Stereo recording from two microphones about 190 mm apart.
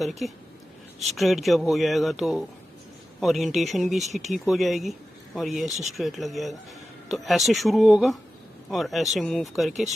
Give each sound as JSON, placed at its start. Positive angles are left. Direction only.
{"t": 0.0, "sound": "speech", "side_deg": 0}
{"t": 4.0, "sound": "speech", "side_deg": -40}
{"t": 4.3, "sound": "speech", "side_deg": 0}